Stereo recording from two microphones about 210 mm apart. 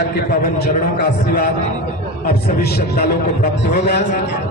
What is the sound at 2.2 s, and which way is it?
A man's voice, 50° left (ahead or behind).